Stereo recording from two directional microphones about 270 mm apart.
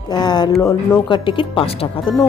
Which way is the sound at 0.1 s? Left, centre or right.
Centre.